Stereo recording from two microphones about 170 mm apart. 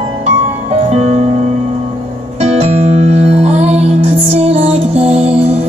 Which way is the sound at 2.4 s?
35° right (ahead or behind).